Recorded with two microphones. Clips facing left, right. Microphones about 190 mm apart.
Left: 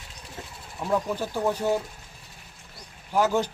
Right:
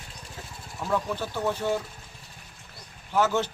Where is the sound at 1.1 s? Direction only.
10° left (ahead or behind).